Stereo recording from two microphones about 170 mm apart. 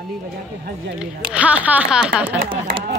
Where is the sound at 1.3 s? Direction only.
10° right (ahead or behind).